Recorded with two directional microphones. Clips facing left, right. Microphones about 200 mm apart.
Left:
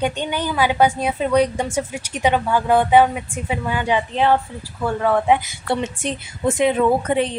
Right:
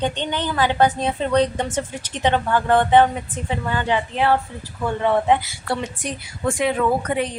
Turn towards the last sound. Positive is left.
turn(degrees=25)  # may be behind; listen again after turning